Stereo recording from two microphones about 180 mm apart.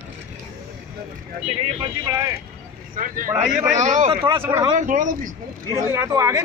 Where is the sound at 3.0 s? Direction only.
50° right (ahead or behind).